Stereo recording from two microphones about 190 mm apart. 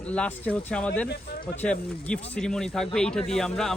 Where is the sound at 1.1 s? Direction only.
55° left (ahead or behind).